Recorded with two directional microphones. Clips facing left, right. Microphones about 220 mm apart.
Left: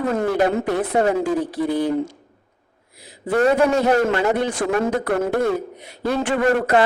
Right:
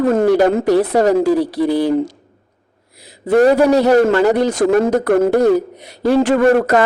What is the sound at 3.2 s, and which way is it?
A woman's voice, 35° right (ahead or behind).